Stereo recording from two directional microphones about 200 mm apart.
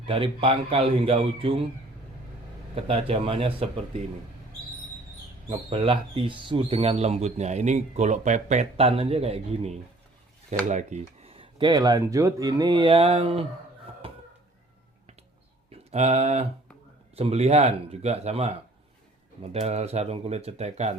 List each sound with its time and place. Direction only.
0.0 s speech: 25° right (ahead or behind)
2.7 s speech: 30° right (ahead or behind)
5.5 s speech: 25° right (ahead or behind)
14.0 s a sound: 30° right (ahead or behind)
15.7 s speech: 30° right (ahead or behind)